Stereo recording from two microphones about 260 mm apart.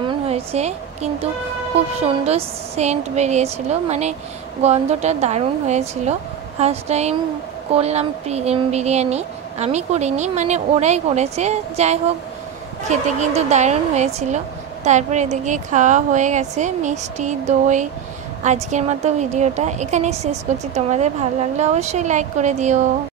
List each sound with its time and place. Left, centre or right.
0.3 s a woman's voice: right
2.2 s a woman's voice: right
13.2 s a woman's voice: right